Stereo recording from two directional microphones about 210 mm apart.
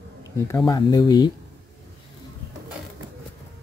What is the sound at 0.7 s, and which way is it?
Speech, 20° left (ahead or behind).